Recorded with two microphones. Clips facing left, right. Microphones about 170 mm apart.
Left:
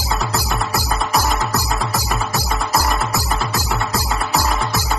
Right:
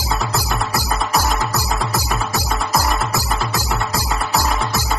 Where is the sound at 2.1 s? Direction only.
5° left (ahead or behind).